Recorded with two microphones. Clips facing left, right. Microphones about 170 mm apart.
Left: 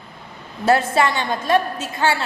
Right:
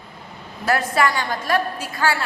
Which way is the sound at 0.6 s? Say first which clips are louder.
Left 3 dB; 25° left (ahead or behind).